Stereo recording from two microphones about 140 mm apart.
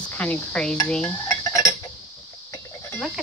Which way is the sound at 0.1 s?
10° left (ahead or behind).